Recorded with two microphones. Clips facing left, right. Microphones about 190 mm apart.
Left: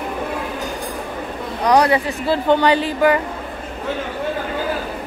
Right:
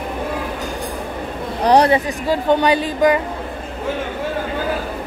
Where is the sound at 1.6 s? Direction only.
30° right (ahead or behind).